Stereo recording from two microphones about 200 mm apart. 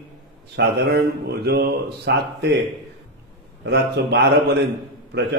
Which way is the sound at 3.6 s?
60° right (ahead or behind).